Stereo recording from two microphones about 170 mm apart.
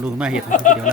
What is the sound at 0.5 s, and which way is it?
Speech, 50° left (ahead or behind).